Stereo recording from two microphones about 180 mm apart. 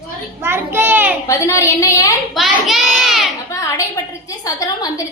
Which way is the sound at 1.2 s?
15° left (ahead or behind).